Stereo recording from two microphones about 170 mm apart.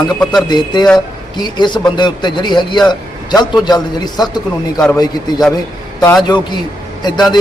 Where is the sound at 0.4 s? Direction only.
25° left (ahead or behind).